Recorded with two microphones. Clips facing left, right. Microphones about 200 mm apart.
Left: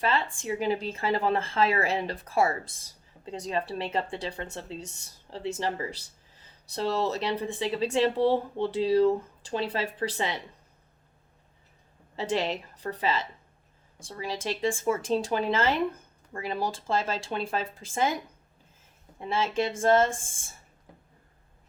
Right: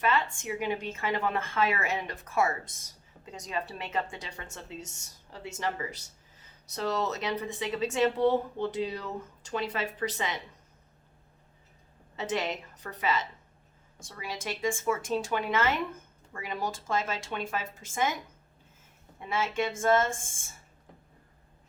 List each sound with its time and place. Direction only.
0.0 s speech: 30° left (ahead or behind)
12.1 s speech: 30° left (ahead or behind)
19.2 s speech: 30° left (ahead or behind)